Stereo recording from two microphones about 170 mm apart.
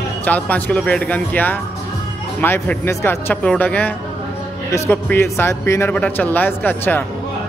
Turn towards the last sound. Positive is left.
turn(degrees=10)  # may be behind; listen again after turning